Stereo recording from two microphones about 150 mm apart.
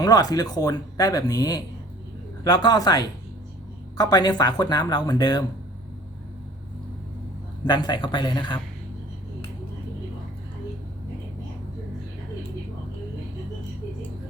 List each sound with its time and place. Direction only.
0.0 s speech: 25° left (ahead or behind)
7.6 s speech: 30° left (ahead or behind)